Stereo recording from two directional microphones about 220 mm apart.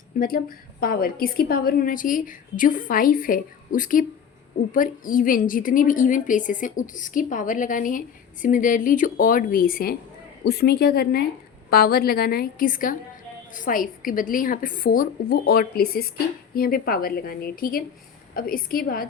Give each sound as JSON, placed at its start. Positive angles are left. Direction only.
{"t": 0.2, "sound": "a woman's voice", "side_deg": 40}